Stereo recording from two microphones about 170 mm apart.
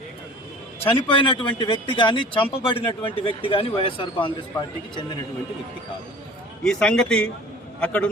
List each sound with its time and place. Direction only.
0.9 s a man's voice: 30° left (ahead or behind)
6.7 s a man's voice: 5° left (ahead or behind)